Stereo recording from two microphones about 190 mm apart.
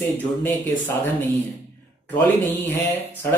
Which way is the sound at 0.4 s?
10° left (ahead or behind).